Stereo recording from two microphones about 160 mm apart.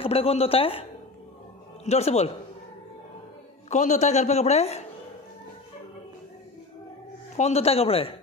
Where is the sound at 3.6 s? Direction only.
45° left (ahead or behind).